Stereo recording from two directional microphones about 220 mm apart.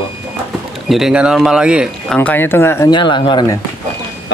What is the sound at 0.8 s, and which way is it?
Speech, centre (ahead or behind).